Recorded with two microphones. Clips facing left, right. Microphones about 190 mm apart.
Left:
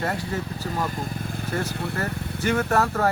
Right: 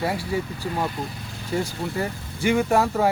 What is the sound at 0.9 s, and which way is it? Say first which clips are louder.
Speech: left 1 dB; 50° left (ahead or behind).